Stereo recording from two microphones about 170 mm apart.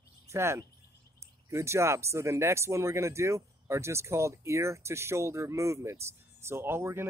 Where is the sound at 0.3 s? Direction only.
15° right (ahead or behind).